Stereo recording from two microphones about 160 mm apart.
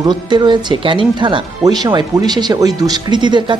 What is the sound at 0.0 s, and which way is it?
Speech, 30° right (ahead or behind).